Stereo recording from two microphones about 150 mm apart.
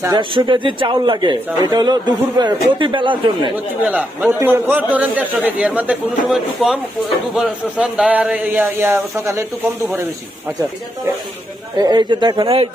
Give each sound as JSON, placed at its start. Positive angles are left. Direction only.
{"t": 0.0, "sound": "speech", "side_deg": -30}
{"t": 3.8, "sound": "speech", "side_deg": -10}
{"t": 11.8, "sound": "speech", "side_deg": -30}